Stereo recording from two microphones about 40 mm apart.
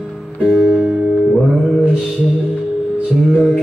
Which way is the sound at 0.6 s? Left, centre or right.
Right.